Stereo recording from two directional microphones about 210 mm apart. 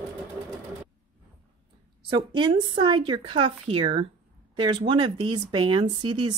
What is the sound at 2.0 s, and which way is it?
Speech, 20° right (ahead or behind).